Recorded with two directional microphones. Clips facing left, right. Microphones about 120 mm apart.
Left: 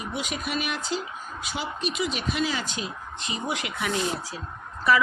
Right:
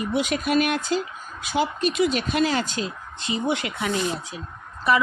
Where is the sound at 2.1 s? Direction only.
50° right (ahead or behind).